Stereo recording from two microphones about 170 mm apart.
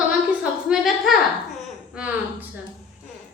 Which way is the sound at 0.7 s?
Centre (ahead or behind).